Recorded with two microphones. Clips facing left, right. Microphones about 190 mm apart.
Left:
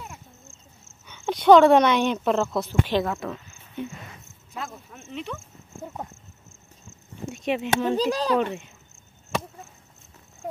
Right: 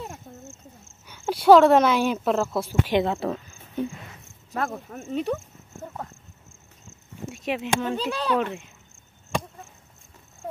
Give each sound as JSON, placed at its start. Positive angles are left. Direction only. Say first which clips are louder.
{"t": 1.0, "sound": "speech", "louder": "even", "side_deg": -5}
{"t": 2.9, "sound": "speech", "louder": "right 2 dB", "side_deg": -25}
{"t": 4.6, "sound": "speech", "louder": "right 7 dB", "side_deg": -55}
{"t": 7.2, "sound": "speech", "louder": "left 2 dB", "side_deg": 0}
{"t": 7.9, "sound": "speech", "louder": "left 3 dB", "side_deg": 35}
{"t": 8.4, "sound": "speech", "louder": "left 2 dB", "side_deg": 0}